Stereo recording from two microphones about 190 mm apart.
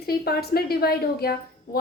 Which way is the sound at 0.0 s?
55° left (ahead or behind).